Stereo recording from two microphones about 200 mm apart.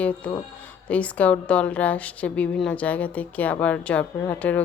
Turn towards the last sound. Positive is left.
turn(degrees=5)  # may be behind; listen again after turning